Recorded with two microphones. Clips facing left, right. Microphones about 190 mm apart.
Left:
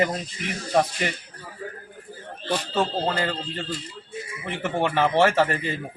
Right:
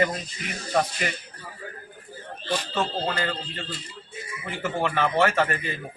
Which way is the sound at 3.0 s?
30° left (ahead or behind).